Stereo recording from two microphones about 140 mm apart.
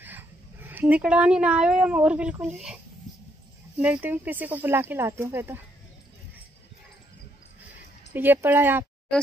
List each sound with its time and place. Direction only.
0.0 s speech: 15° right (ahead or behind)
3.8 s speech: 10° right (ahead or behind)
8.1 s speech: 15° right (ahead or behind)